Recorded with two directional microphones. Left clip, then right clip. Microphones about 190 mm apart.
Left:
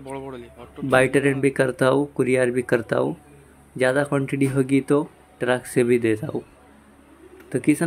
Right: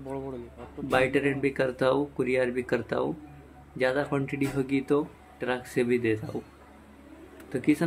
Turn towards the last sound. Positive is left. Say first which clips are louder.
# left 5 dB
turn(degrees=20)  # may be behind; listen again after turning